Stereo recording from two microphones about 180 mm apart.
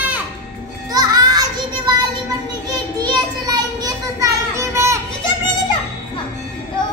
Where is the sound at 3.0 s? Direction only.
20° right (ahead or behind).